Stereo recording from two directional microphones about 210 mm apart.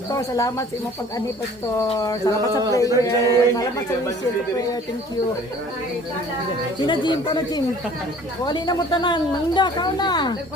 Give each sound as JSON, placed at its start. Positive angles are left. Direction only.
{"t": 0.1, "sound": "a man's voice", "side_deg": 15}
{"t": 1.9, "sound": "a man's voice", "side_deg": 15}
{"t": 6.8, "sound": "a woman's voice", "side_deg": 20}